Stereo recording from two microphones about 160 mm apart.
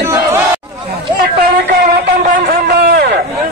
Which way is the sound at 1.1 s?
80° right.